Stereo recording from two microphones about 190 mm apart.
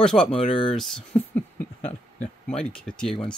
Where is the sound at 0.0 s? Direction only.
5° left (ahead or behind).